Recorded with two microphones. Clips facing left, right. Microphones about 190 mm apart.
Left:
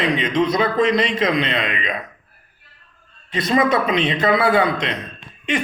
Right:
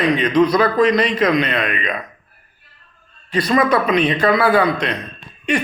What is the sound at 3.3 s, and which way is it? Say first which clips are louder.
A man's voice: right 2 dB; 25° left (ahead or behind).